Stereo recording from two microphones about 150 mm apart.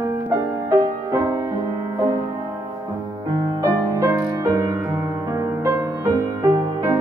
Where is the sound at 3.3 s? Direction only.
25° right (ahead or behind).